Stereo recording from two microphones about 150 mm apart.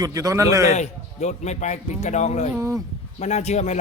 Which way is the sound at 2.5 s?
20° right (ahead or behind).